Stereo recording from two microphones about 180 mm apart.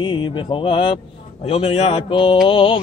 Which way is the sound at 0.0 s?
25° left (ahead or behind).